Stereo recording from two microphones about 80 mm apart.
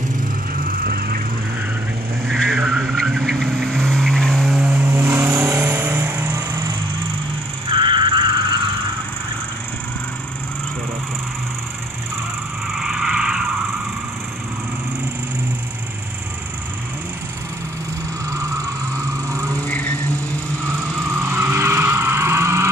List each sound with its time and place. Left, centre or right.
2.2 s vehicle: centre
4.6 s vehicle: centre
7.7 s a sound: right
12.7 s vehicle: centre
18.9 s vehicle: right
19.6 s vehicle: centre
20.6 s vehicle: right